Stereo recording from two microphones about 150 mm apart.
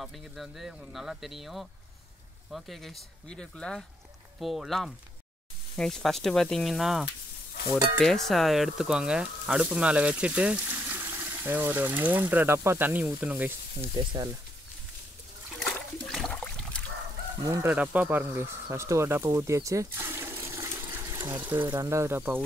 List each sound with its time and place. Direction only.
0.0 s speech: centre (ahead or behind)
13.9 s speech: 30° right (ahead or behind)
15.7 s toilet flush: 5° left (ahead or behind)
17.5 s speech: 10° right (ahead or behind)
20.9 s water: 25° right (ahead or behind)
21.6 s speech: 20° right (ahead or behind)